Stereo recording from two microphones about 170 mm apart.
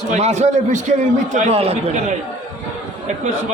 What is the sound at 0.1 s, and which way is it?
Speech, 40° right (ahead or behind).